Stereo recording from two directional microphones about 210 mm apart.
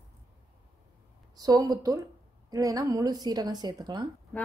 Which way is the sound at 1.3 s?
20° right (ahead or behind).